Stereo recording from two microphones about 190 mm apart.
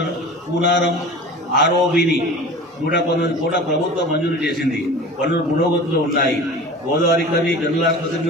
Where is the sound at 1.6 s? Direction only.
60° left (ahead or behind).